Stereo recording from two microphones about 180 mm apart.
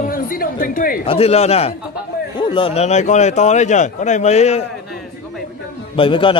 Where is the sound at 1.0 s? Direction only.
35° left (ahead or behind).